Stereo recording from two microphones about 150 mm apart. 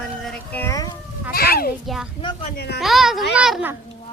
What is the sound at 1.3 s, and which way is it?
Speech, 90° left.